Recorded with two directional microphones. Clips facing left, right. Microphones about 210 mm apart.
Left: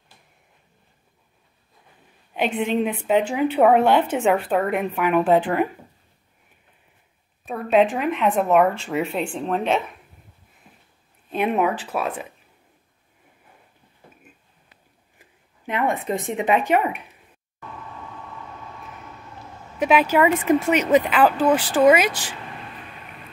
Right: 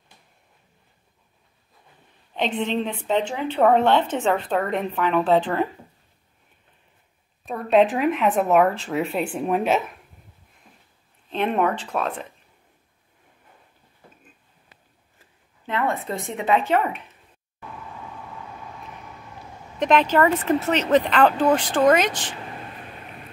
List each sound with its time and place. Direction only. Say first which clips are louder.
2.3 s a woman's voice: left 2 dB; 10° left (ahead or behind)
7.4 s speech: even; centre (ahead or behind)
10.6 s a sound: left 1 dB; 5° left (ahead or behind)
11.2 s a woman's voice: left 1 dB; 10° left (ahead or behind)
15.1 s speech: left 3 dB; 15° left (ahead or behind)
19.8 s a woman's voice: left 1 dB; 10° left (ahead or behind)